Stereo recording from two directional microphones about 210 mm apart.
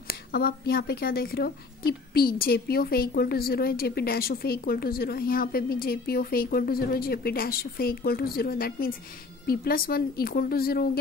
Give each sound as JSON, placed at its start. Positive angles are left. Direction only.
{"t": 0.1, "sound": "speech", "side_deg": 45}